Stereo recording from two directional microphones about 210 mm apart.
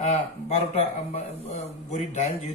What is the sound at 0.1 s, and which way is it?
Speech, 30° left (ahead or behind).